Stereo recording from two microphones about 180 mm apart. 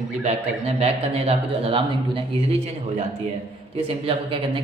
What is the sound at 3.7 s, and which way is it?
Speech, 30° right (ahead or behind).